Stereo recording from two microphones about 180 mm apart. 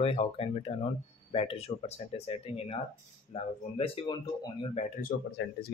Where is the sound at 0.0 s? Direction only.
35° left (ahead or behind).